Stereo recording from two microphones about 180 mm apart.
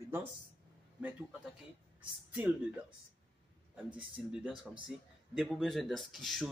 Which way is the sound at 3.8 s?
5° right (ahead or behind).